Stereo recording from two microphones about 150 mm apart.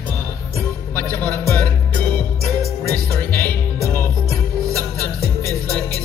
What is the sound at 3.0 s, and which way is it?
Music, 15° left (ahead or behind).